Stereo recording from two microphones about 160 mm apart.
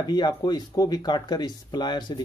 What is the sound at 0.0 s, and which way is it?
Speech, 25° left (ahead or behind).